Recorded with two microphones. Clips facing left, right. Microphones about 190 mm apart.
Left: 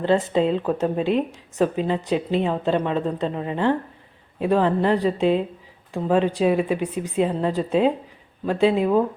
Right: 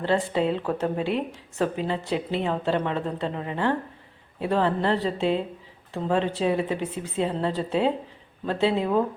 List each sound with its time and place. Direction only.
0.0 s speech: 20° left (ahead or behind)